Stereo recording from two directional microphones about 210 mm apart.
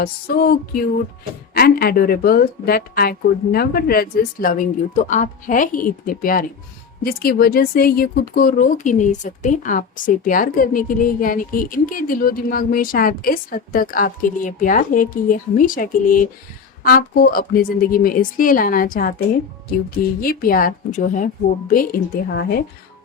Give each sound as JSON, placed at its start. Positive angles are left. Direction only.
{"t": 0.0, "sound": "a woman's voice", "side_deg": 45}